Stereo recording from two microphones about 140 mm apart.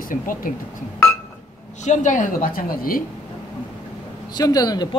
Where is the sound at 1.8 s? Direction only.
60° left (ahead or behind); by 3.0 s 90° left.